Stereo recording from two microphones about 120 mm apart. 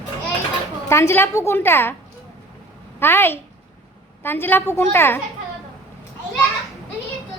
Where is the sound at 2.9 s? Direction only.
20° left (ahead or behind).